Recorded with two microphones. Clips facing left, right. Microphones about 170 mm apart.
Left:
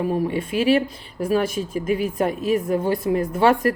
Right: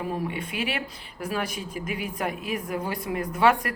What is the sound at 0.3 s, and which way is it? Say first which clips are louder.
Speech: left 11 dB; 30° left (ahead or behind).